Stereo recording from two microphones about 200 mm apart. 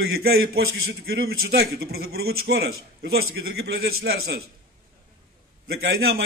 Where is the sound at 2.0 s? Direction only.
90° right.